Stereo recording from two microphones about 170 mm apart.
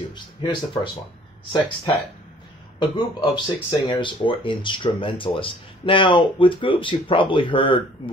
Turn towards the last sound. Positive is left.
turn(degrees=30)  # may be behind; listen again after turning